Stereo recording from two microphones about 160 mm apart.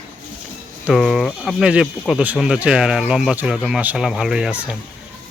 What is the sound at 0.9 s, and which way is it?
Speech, centre (ahead or behind).